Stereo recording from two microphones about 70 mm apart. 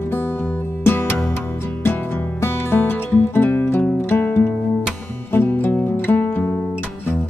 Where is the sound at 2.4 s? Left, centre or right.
Left.